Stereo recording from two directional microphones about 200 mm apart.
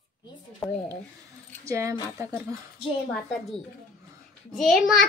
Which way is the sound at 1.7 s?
15° right (ahead or behind).